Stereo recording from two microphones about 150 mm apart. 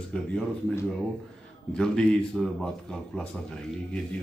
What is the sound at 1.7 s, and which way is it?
A man's voice, 5° left (ahead or behind).